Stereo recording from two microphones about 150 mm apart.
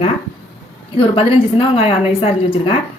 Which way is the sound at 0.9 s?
40° left (ahead or behind).